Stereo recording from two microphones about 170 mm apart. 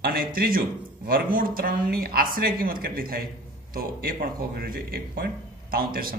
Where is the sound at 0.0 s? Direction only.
60° right (ahead or behind).